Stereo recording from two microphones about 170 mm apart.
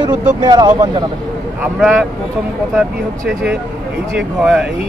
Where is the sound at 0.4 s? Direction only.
25° right (ahead or behind).